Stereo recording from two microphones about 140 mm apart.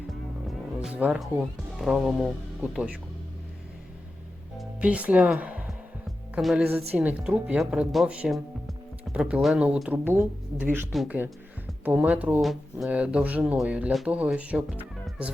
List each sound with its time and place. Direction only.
0.1 s music: centre (ahead or behind)
1.7 s speech: centre (ahead or behind)
4.8 s music: 10° right (ahead or behind)
6.7 s a woman's voice: 10° right (ahead or behind)
11.9 s a woman's voice: 10° right (ahead or behind)